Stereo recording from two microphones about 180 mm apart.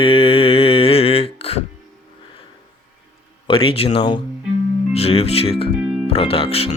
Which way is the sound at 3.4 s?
30° left (ahead or behind).